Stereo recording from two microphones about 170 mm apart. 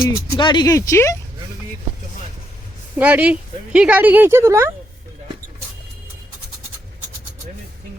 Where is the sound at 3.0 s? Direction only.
10° right (ahead or behind).